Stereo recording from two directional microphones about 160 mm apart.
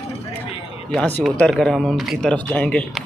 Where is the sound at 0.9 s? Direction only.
5° left (ahead or behind).